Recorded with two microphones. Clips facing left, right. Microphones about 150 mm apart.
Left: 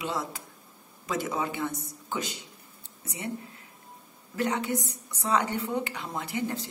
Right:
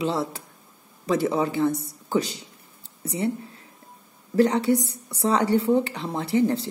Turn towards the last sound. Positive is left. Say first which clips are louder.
# right 10 dB
turn(degrees=-35)  # may be behind; listen again after turning